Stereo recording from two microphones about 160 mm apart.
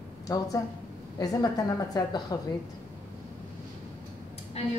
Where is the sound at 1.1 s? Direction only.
20° left (ahead or behind).